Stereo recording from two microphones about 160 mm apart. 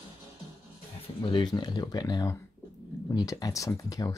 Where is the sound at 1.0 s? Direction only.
30° left (ahead or behind).